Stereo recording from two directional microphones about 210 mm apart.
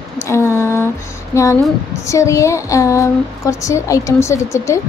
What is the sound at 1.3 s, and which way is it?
Speech, 10° left (ahead or behind).